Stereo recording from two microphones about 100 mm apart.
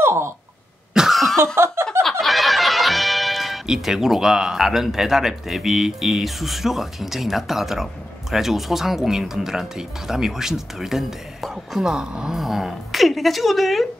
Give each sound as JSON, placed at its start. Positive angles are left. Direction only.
{"t": 0.0, "sound": "a sound", "side_deg": -25}
{"t": 0.9, "sound": "cough", "side_deg": 0}
{"t": 1.4, "sound": "snicker", "side_deg": -25}
{"t": 2.0, "sound": "speech", "side_deg": 0}